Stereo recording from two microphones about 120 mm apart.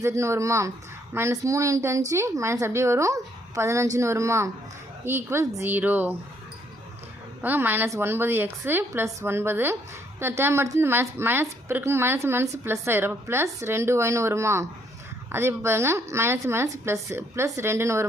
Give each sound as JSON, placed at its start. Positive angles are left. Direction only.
{"t": 0.0, "sound": "a woman's voice", "side_deg": -25}
{"t": 7.4, "sound": "a woman's voice", "side_deg": -15}